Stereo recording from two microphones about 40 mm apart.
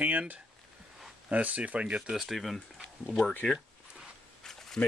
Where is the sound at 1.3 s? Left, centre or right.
Right.